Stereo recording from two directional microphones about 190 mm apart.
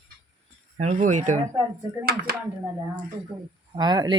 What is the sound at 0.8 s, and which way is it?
Speech, 40° right (ahead or behind).